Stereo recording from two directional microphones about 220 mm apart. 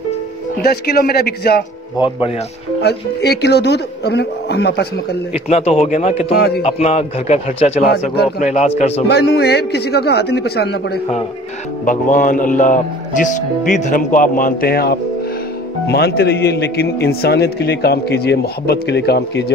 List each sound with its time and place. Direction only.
0.6 s a man's voice: 45° left (ahead or behind)
2.0 s a man's voice: 25° left (ahead or behind)
2.8 s a man's voice: 50° left (ahead or behind)
5.3 s a man's voice: 25° left (ahead or behind)
6.3 s a man's voice: 45° left (ahead or behind)
6.6 s a man's voice: 30° left (ahead or behind)
9.0 s a man's voice: 50° left (ahead or behind)
11.8 s a man's voice: 35° left (ahead or behind)